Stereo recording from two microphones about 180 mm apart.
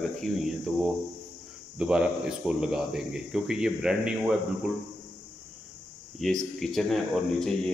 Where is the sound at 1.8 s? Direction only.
5° right (ahead or behind).